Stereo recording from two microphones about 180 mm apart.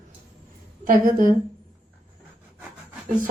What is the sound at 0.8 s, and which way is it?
Speech, 45° right (ahead or behind).